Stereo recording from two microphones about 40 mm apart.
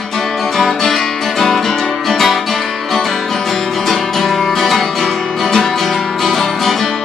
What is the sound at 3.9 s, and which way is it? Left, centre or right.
Music, centre.